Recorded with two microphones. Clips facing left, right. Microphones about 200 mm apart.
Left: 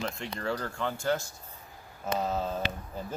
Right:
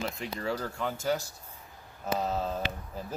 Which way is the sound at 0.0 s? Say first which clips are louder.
Even; 5° right (ahead or behind).